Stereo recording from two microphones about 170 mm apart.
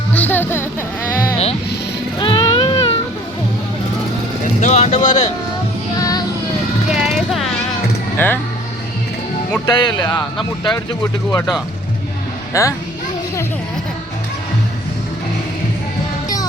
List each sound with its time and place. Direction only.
0.1 s a sound: 10° left (ahead or behind)
2.1 s baby cry: 30° left (ahead or behind)
4.6 s speech: 40° left (ahead or behind)
6.0 s music: 20° left (ahead or behind)
6.9 s vehicle: centre (ahead or behind)
9.6 s speech: 25° left (ahead or behind)
12.5 s a child's voice: 15° left (ahead or behind)